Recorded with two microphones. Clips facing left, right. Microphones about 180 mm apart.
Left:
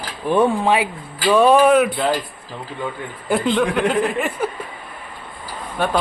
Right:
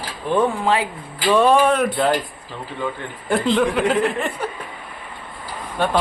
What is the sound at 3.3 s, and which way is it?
Speech, centre (ahead or behind).